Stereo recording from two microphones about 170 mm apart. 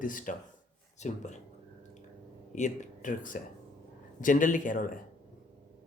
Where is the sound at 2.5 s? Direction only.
50° left (ahead or behind).